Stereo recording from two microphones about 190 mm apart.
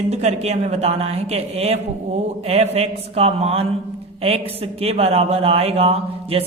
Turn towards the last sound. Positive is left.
turn(degrees=-30)  # may be behind; listen again after turning